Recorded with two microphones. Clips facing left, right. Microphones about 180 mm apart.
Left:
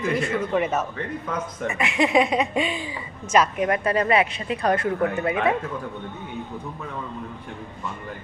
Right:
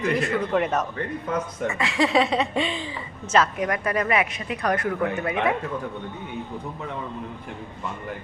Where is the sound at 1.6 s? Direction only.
20° left (ahead or behind).